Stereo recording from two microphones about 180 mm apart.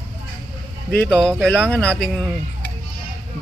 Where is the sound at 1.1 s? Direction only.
5° left (ahead or behind).